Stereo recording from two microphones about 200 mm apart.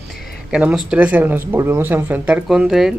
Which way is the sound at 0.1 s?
Centre (ahead or behind).